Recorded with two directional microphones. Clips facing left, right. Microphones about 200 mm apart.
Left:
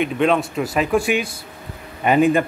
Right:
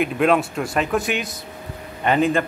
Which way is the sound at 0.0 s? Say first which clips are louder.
Even; centre (ahead or behind).